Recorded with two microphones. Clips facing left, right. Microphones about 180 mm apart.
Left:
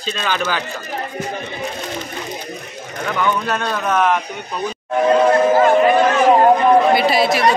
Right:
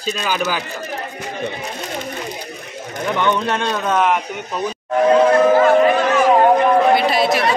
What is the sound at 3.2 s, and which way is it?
Speech, 25° right (ahead or behind).